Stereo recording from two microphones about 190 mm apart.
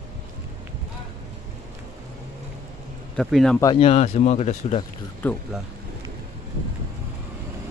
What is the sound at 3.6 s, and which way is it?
Speech, 25° left (ahead or behind).